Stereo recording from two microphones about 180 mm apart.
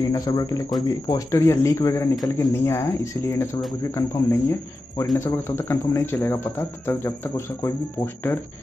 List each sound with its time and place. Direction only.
0.1 s speech: 20° left (ahead or behind)